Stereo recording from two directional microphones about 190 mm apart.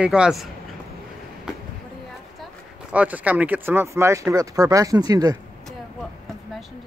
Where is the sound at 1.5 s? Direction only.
5° right (ahead or behind).